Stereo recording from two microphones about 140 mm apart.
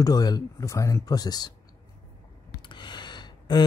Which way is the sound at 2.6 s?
35° left (ahead or behind).